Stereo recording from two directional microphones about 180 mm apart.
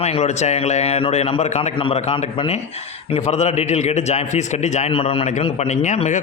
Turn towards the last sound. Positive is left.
turn(degrees=40)  # may be behind; listen again after turning